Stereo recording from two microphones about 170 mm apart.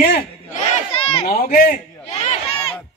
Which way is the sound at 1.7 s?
40° left (ahead or behind).